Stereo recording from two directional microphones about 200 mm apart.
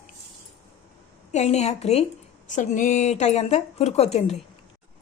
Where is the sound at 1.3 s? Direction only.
35° left (ahead or behind).